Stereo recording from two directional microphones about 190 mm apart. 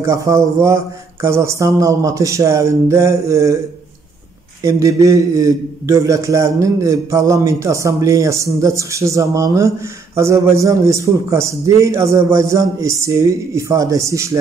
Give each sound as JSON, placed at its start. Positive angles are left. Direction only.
{"t": 0.0, "sound": "a man's voice", "side_deg": -15}
{"t": 4.6, "sound": "a man's voice", "side_deg": -15}